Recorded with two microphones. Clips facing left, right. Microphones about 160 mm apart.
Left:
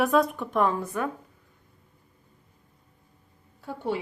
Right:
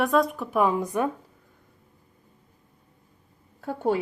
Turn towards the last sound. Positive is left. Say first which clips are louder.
# right 5 dB
turn(degrees=-45)  # may be behind; listen again after turning